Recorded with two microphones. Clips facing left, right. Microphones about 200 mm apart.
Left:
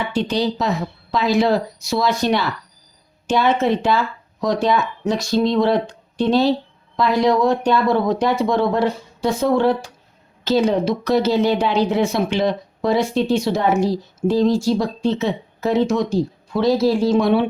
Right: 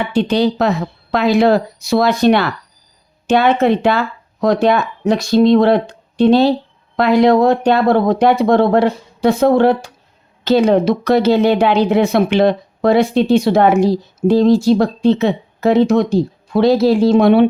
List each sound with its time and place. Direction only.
0.1 s speech: 60° right (ahead or behind)